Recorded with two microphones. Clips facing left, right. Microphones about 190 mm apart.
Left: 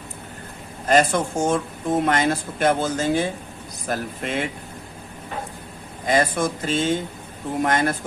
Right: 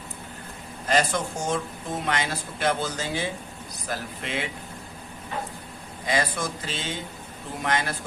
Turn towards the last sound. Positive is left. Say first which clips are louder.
# left 7 dB
turn(degrees=50)  # may be behind; listen again after turning